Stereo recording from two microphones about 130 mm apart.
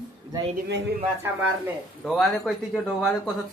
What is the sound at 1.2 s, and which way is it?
Speech, 15° right (ahead or behind).